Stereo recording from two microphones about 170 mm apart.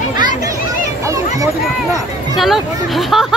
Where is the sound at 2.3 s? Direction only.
Centre (ahead or behind).